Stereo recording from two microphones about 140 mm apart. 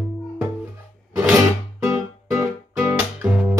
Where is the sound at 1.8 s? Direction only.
20° right (ahead or behind).